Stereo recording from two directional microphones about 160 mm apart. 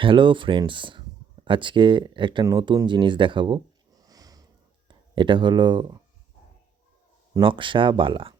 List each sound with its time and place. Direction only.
0.0 s speech: 30° right (ahead or behind)
7.3 s speech: 30° right (ahead or behind)